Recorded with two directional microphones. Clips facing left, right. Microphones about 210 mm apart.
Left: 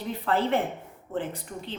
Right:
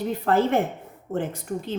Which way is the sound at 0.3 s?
45° right (ahead or behind).